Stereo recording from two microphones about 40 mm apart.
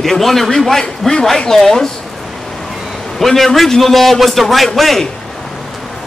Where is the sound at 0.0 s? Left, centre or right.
Centre.